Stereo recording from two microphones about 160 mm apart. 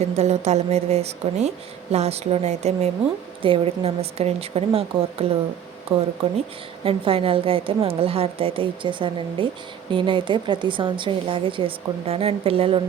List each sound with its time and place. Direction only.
0.0 s a woman's voice: 40° right (ahead or behind)